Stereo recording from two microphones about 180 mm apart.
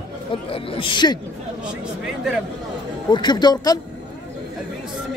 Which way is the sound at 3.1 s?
25° left (ahead or behind).